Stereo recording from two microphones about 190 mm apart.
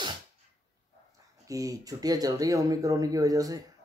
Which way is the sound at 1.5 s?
20° right (ahead or behind).